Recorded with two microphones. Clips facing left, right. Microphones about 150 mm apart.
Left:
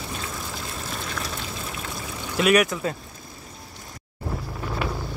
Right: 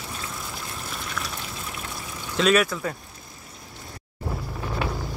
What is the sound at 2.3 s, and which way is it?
Speech, 15° left (ahead or behind).